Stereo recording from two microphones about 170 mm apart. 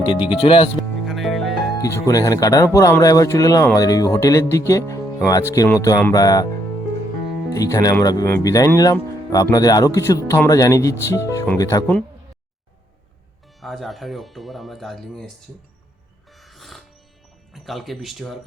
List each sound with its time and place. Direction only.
0.0 s speech: 30° left (ahead or behind)
0.8 s music: centre (ahead or behind)
1.8 s speech: 20° left (ahead or behind)
7.5 s speech: 20° left (ahead or behind)
13.6 s speech: centre (ahead or behind)
16.4 s music: centre (ahead or behind)
17.5 s speech: centre (ahead or behind)